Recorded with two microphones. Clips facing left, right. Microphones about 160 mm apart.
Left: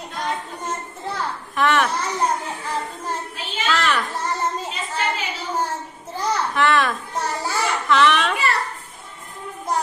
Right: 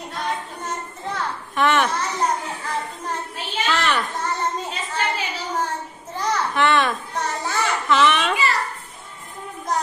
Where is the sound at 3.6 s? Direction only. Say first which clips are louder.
Left 1 dB; centre (ahead or behind).